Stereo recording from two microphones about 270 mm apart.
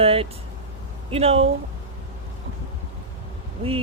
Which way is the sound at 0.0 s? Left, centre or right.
Right.